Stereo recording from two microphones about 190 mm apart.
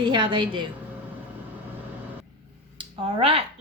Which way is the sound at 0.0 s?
25° right (ahead or behind).